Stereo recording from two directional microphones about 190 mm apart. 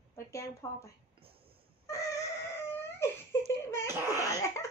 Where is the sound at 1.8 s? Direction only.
15° left (ahead or behind).